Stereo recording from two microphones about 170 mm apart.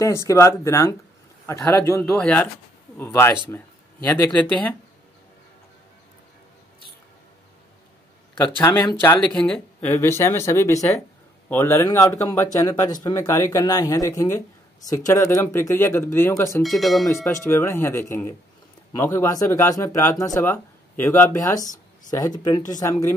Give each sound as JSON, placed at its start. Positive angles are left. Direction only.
{"t": 0.0, "sound": "speech", "side_deg": 15}
{"t": 8.5, "sound": "speech", "side_deg": 10}
{"t": 16.6, "sound": "speech", "side_deg": 0}
{"t": 17.1, "sound": "speech", "side_deg": 15}